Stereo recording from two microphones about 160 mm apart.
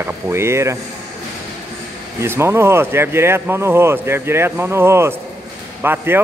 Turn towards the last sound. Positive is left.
turn(degrees=-15)  # may be behind; listen again after turning